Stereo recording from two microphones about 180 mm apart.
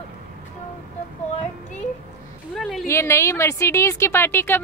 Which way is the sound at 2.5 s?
Centre (ahead or behind).